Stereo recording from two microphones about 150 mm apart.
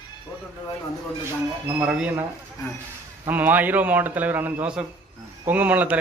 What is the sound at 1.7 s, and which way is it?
Speech, 10° right (ahead or behind).